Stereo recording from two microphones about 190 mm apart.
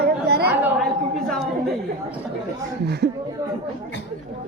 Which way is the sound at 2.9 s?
60° right (ahead or behind).